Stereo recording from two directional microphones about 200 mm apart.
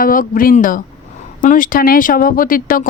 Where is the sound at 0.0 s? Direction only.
45° left (ahead or behind).